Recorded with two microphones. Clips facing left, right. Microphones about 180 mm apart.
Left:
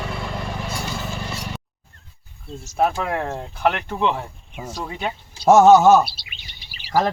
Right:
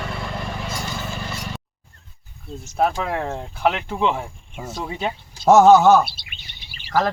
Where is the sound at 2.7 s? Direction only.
5° left (ahead or behind).